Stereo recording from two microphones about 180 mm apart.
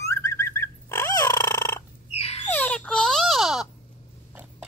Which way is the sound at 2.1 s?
35° left (ahead or behind).